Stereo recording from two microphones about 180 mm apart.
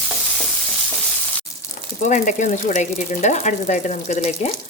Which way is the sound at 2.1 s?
45° left (ahead or behind).